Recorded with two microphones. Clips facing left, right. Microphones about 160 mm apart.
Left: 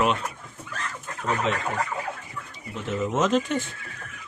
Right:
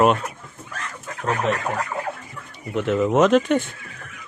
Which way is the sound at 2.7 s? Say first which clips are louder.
Right 8 dB; 70° right (ahead or behind).